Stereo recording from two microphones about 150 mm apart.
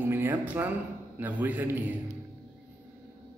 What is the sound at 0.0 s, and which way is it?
A man's voice, 15° right (ahead or behind).